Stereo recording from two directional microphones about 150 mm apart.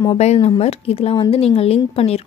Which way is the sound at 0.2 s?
45° left (ahead or behind).